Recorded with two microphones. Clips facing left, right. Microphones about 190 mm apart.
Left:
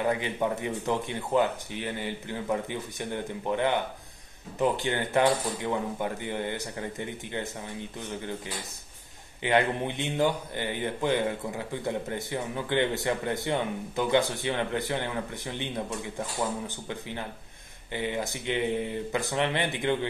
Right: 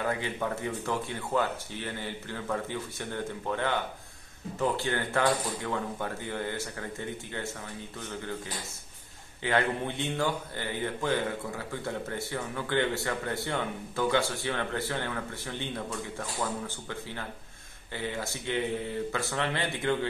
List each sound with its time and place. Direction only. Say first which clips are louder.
0.0 s a man's voice: left 4 dB; 20° left (ahead or behind)
9.4 s a man's voice: left 3 dB; 20° left (ahead or behind)